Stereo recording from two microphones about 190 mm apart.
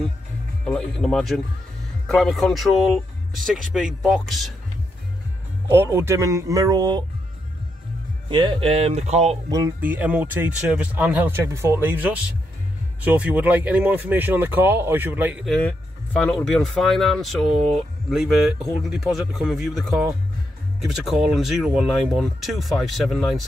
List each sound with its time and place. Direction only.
0.7 s speech: 5° left (ahead or behind)
5.7 s speech: 15° right (ahead or behind)
8.3 s speech: 25° right (ahead or behind)
9.5 s speech: 15° right (ahead or behind)
20.8 s speech: centre (ahead or behind)